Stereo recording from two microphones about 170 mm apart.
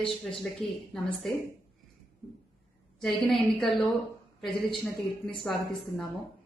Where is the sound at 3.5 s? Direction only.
Centre (ahead or behind).